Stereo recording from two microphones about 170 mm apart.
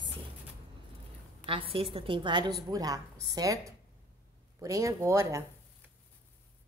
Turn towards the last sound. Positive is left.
turn(degrees=-15)  # may be behind; listen again after turning